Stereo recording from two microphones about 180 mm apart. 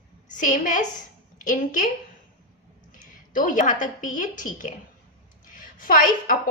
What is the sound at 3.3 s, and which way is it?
A woman's voice, 45° left (ahead or behind).